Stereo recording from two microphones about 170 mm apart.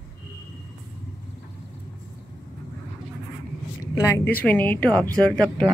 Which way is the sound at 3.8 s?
20° left (ahead or behind).